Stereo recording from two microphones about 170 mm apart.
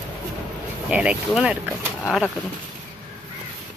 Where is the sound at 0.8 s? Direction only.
5° right (ahead or behind).